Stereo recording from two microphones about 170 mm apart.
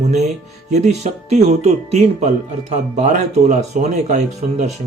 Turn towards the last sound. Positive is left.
turn(degrees=-45)  # may be behind; listen again after turning